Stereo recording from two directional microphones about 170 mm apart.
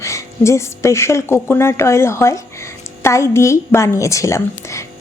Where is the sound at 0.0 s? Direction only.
15° left (ahead or behind).